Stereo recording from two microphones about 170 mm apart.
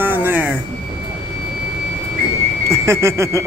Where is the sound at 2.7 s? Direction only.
15° right (ahead or behind).